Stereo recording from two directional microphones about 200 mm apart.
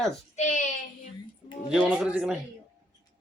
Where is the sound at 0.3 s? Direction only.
35° left (ahead or behind).